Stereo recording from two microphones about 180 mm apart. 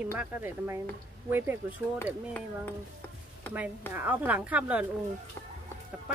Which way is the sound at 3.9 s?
10° right (ahead or behind).